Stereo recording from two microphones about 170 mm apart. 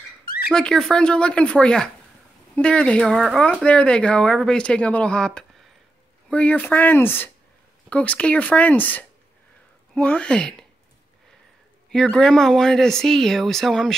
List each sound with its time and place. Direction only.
0.5 s speech: 5° left (ahead or behind)
11.9 s speech: 5° left (ahead or behind)